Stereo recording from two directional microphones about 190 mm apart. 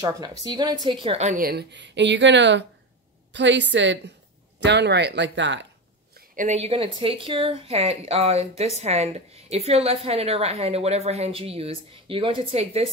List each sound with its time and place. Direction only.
0.0 s a woman's voice: 20° right (ahead or behind); by 5.7 s 70° right (ahead or behind)
6.3 s speech: 35° right (ahead or behind)